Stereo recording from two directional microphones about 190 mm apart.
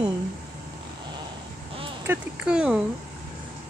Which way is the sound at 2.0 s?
5° right (ahead or behind).